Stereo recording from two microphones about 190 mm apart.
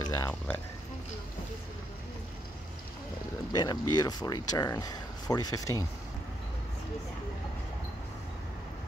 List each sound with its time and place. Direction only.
0.0 s speech: 15° left (ahead or behind)
3.5 s speech: 20° left (ahead or behind)